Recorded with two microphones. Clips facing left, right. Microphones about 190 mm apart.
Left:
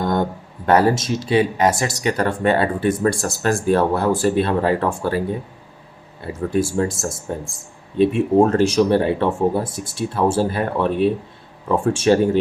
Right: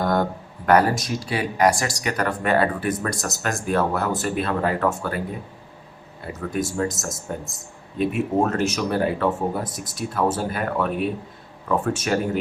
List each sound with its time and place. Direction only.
0.0 s speech: 25° left (ahead or behind)
6.2 s speech: 30° left (ahead or behind)